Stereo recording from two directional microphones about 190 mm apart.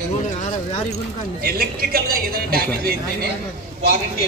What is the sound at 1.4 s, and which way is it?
A man's voice, 50° right (ahead or behind).